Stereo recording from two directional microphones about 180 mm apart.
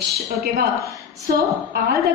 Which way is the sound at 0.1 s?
60° right (ahead or behind).